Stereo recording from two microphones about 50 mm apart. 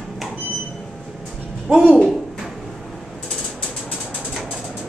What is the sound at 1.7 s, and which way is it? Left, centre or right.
Speech, right.